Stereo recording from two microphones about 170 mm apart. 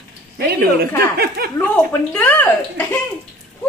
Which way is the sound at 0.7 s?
65° right (ahead or behind).